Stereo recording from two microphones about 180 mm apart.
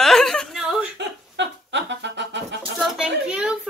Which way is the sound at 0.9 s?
80° right.